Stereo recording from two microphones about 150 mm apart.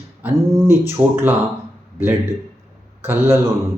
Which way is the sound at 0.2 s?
15° right (ahead or behind).